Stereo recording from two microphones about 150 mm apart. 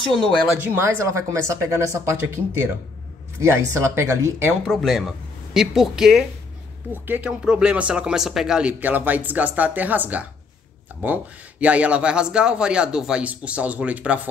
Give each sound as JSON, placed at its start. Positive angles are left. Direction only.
{"t": 0.1, "sound": "speech", "side_deg": 0}
{"t": 0.6, "sound": "speech", "side_deg": -15}
{"t": 4.6, "sound": "speech", "side_deg": 0}